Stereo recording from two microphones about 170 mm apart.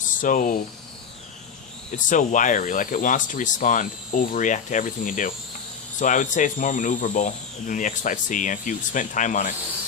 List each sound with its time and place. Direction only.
0.1 s speech: 50° left (ahead or behind)
1.9 s speech: 50° left (ahead or behind)